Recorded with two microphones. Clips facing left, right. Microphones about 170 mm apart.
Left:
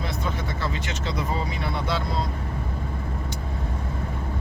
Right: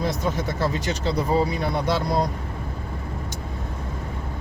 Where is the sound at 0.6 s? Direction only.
40° right (ahead or behind).